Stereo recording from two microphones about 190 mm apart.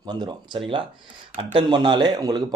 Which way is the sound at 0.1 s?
25° right (ahead or behind).